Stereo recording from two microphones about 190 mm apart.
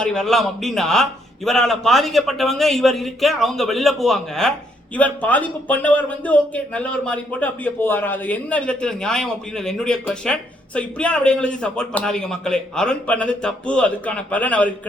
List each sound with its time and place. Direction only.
0.0 s a man's voice: 5° left (ahead or behind)